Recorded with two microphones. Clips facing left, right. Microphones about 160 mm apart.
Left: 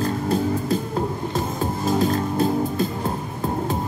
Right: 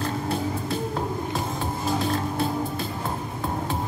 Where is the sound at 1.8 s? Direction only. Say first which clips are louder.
Left 5 dB; 45° left (ahead or behind).